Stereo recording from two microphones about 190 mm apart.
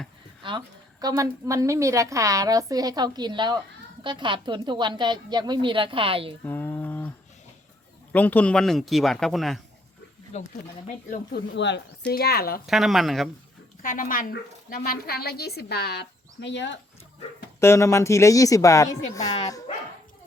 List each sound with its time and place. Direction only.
0.4 s a woman's voice: 20° right (ahead or behind)
6.4 s a sound: 10° left (ahead or behind)
8.1 s speech: 10° left (ahead or behind)
10.3 s speech: 35° left (ahead or behind)
11.1 s speech: 60° left (ahead or behind)
12.1 s speech: 55° left (ahead or behind)
12.6 s speech: centre (ahead or behind)
13.8 s speech: 45° left (ahead or behind); by 16.7 s 70° left (ahead or behind)
17.6 s speech: 15° left (ahead or behind)